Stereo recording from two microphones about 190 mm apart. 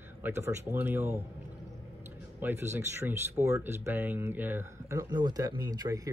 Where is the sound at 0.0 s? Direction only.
10° right (ahead or behind).